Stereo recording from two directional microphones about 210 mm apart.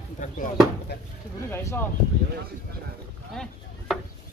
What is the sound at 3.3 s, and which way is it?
Chop, centre (ahead or behind).